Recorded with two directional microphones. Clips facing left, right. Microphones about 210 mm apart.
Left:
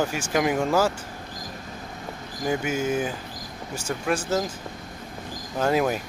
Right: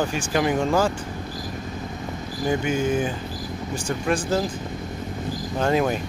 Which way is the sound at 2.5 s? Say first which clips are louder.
Right 2 dB; 5° left (ahead or behind).